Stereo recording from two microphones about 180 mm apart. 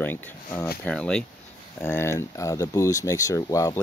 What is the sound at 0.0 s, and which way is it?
Speech, 15° left (ahead or behind).